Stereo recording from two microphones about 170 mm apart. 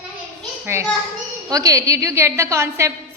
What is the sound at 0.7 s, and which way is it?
Children playing, 15° right (ahead or behind).